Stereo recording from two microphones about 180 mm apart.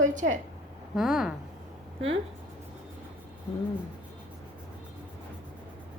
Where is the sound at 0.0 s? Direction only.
45° right (ahead or behind).